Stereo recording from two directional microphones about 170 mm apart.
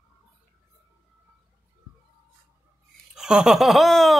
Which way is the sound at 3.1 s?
5° right (ahead or behind).